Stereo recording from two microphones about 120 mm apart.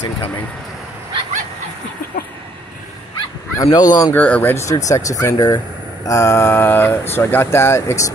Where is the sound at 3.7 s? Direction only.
30° left (ahead or behind).